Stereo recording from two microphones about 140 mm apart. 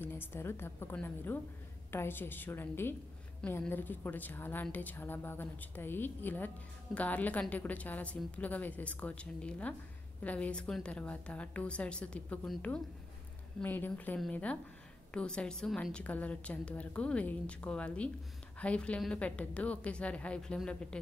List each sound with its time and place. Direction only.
0.0 s a woman's voice: 15° left (ahead or behind)